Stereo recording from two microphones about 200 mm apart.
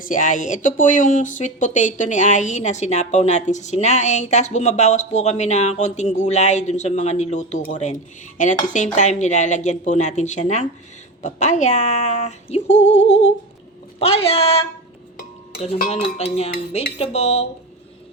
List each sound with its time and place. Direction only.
0.0 s speech: 40° left (ahead or behind)
15.6 s speech: 35° left (ahead or behind)